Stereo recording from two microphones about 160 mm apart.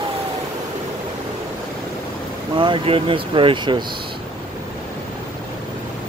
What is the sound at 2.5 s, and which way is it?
Speech, 30° right (ahead or behind).